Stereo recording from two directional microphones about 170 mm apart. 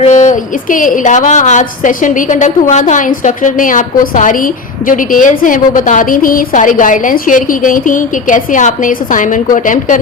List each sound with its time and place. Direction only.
0.0 s a woman's voice: 45° left (ahead or behind)